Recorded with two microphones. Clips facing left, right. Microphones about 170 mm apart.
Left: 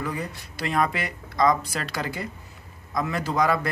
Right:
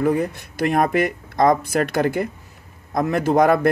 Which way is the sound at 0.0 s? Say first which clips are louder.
Right 11 dB; 55° right (ahead or behind).